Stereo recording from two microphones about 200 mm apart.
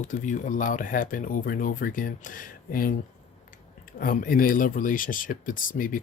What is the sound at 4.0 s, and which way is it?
Speech, 45° left (ahead or behind).